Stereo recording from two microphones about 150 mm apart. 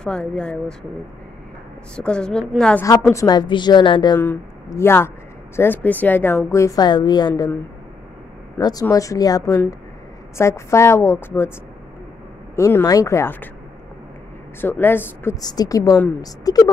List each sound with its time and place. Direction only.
0.0 s a woman's voice: 5° left (ahead or behind)
2.0 s a woman's voice: 5° left (ahead or behind)
2.8 s a woman's voice: 20° left (ahead or behind)
4.2 s a woman's voice: 15° left (ahead or behind)
8.5 s a woman's voice: 25° left (ahead or behind)
12.5 s a woman's voice: 20° left (ahead or behind)
14.6 s a woman's voice: 15° left (ahead or behind)
15.4 s a woman's voice: 25° left (ahead or behind)